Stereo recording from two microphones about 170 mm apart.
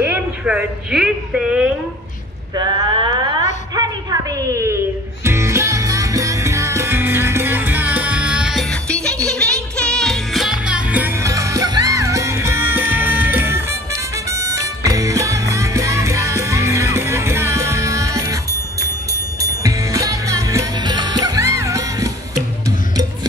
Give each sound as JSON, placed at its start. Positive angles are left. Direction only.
{"t": 0.0, "sound": "a woman's voice", "side_deg": -10}
{"t": 2.5, "sound": "speech", "side_deg": -30}
{"t": 3.7, "sound": "music", "side_deg": -20}